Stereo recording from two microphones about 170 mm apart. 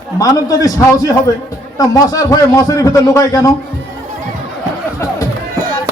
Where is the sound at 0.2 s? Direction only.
20° left (ahead or behind).